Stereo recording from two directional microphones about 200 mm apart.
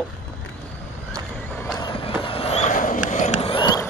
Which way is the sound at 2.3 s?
30° left (ahead or behind).